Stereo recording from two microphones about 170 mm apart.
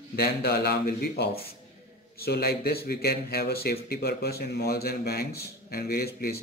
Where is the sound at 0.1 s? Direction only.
65° left (ahead or behind).